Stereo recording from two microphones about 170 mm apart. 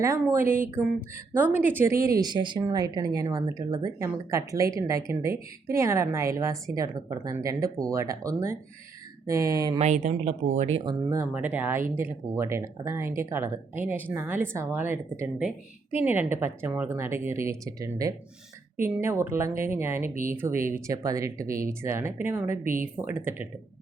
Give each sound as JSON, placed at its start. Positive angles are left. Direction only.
{"t": 0.0, "sound": "speech", "side_deg": -15}
{"t": 0.4, "sound": "speech", "side_deg": -55}
{"t": 1.1, "sound": "speech", "side_deg": -15}
{"t": 2.2, "sound": "speech", "side_deg": -25}
{"t": 9.8, "sound": "speech", "side_deg": -50}
{"t": 10.8, "sound": "speech", "side_deg": -15}
{"t": 11.3, "sound": "speech", "side_deg": -5}
{"t": 22.6, "sound": "speech", "side_deg": -55}
{"t": 23.0, "sound": "speech", "side_deg": -10}